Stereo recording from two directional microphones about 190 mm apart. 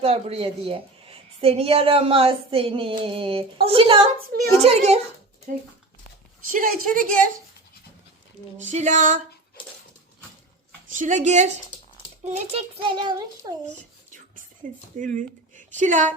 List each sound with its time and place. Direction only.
0.0 s a woman's voice: 30° right (ahead or behind)
6.5 s a woman's voice: 45° right (ahead or behind)
8.7 s speech: 40° right (ahead or behind)
10.8 s a woman's voice: 45° right (ahead or behind); by 13.5 s 20° right (ahead or behind)
13.7 s a sound: 45° right (ahead or behind)
14.9 s speech: 40° right (ahead or behind)